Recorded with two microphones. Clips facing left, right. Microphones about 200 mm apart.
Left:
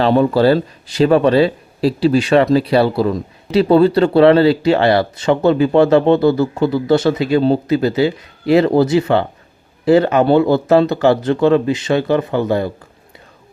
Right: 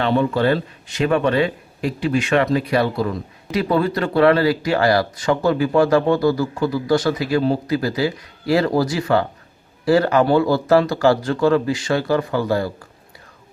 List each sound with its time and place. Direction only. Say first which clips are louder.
0.0 s speech: left 6 dB; 35° left (ahead or behind)